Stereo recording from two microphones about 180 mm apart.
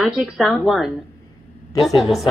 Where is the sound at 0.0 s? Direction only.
Centre (ahead or behind).